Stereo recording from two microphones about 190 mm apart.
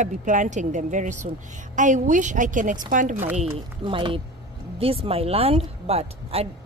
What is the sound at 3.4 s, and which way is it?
A woman's voice, 25° right (ahead or behind).